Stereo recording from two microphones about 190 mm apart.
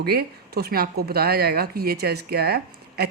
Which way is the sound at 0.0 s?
55° right (ahead or behind).